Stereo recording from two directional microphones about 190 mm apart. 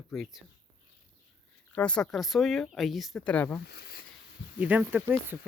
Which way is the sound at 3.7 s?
55° left (ahead or behind).